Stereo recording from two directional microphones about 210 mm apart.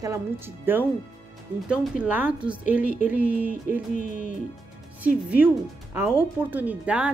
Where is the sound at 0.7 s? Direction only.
10° right (ahead or behind).